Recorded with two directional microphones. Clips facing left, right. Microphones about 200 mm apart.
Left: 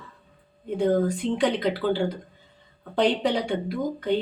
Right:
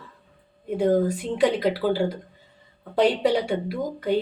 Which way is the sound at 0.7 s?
5° right (ahead or behind).